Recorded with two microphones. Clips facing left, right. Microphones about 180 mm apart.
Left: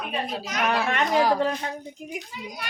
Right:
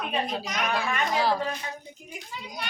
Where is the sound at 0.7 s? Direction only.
70° left (ahead or behind).